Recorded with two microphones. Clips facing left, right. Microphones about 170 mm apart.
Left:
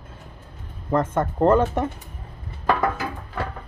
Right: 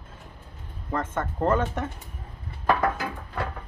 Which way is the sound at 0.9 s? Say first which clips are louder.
Left 7 dB; 40° left (ahead or behind).